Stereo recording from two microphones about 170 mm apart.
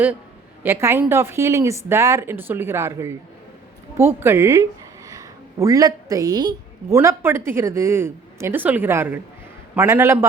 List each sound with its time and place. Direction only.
0.6 s a woman's voice: 15° right (ahead or behind)